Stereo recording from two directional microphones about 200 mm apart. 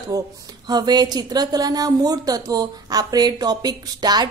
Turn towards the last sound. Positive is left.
turn(degrees=-20)  # may be behind; listen again after turning